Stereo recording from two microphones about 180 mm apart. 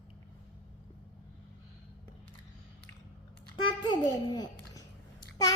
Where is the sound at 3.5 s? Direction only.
25° left (ahead or behind).